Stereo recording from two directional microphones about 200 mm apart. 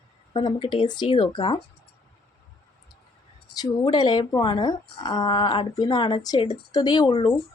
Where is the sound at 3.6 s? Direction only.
20° left (ahead or behind).